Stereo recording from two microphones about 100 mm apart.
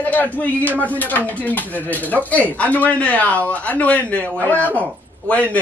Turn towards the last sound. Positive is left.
turn(degrees=15)  # may be behind; listen again after turning